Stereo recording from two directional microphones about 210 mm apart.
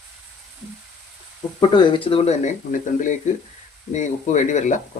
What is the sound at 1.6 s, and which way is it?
Speech, 20° left (ahead or behind).